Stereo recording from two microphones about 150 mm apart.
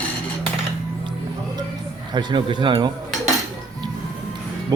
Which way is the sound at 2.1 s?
30° right (ahead or behind).